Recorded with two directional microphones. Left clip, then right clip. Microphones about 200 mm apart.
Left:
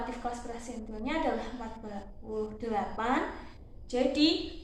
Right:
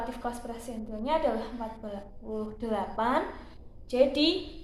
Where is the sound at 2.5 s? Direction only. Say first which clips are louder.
Right 5 dB; 40° right (ahead or behind).